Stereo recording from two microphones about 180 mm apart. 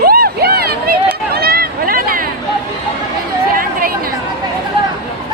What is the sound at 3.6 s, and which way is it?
Chatter, 50° right (ahead or behind).